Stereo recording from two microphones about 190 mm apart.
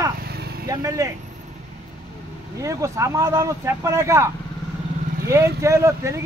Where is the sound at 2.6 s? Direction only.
15° right (ahead or behind).